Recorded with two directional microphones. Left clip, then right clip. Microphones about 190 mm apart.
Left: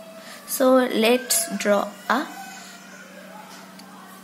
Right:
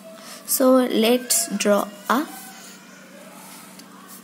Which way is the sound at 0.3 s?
25° right (ahead or behind).